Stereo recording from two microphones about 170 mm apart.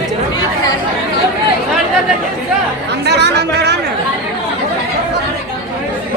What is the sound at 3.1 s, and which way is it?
Chatter, 80° right.